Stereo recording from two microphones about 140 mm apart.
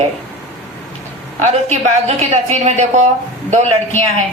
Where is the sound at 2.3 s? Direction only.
55° right (ahead or behind).